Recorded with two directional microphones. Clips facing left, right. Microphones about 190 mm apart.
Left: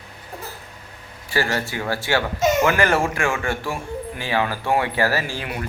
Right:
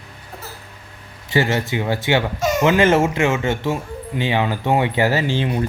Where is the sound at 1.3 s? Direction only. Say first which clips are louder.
Right 4 dB; 20° right (ahead or behind).